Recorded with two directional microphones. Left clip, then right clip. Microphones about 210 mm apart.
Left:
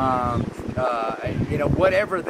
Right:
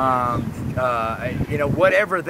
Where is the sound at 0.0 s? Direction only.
5° right (ahead or behind).